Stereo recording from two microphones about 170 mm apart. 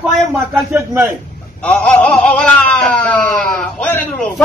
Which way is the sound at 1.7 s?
5° left (ahead or behind).